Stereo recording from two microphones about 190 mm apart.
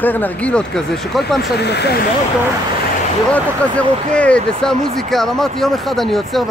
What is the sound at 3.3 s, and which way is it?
Speech, 5° left (ahead or behind).